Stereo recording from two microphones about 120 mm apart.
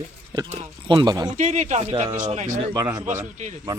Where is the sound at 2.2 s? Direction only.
80° right.